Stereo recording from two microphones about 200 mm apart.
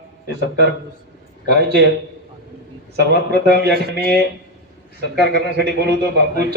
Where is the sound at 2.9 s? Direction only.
55° right (ahead or behind).